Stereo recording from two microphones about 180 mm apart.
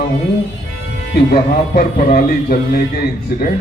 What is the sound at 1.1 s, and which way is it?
A man's voice, 55° left (ahead or behind).